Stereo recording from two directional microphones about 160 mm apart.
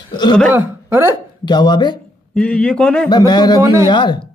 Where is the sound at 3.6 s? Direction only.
20° right (ahead or behind).